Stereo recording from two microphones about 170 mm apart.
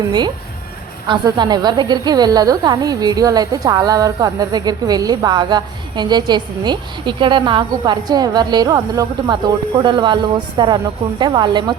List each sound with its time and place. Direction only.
1.0 s a woman's voice: 25° right (ahead or behind)